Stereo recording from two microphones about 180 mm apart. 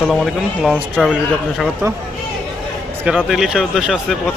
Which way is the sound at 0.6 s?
Centre (ahead or behind).